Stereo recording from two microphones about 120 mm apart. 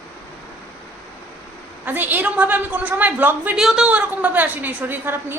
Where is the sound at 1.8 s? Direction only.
15° right (ahead or behind).